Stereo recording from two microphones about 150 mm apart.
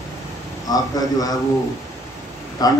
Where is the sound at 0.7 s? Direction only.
25° left (ahead or behind).